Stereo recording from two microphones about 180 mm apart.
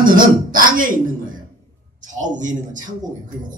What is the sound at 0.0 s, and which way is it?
A man's voice, 50° right (ahead or behind).